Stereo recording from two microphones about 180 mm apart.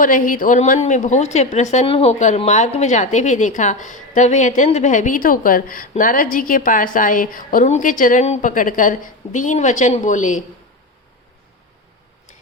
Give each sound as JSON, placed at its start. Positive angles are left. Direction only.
{"t": 0.0, "sound": "a woman's voice", "side_deg": 50}